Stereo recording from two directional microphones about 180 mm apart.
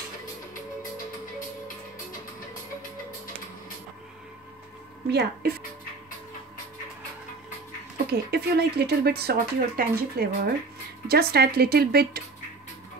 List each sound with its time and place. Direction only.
5.1 s speech: 65° right (ahead or behind)
8.1 s speech: 65° right (ahead or behind)